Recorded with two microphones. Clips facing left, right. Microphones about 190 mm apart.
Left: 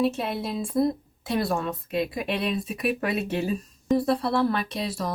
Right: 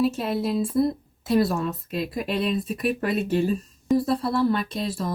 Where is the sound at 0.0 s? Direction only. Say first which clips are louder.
Right 2 dB; centre (ahead or behind).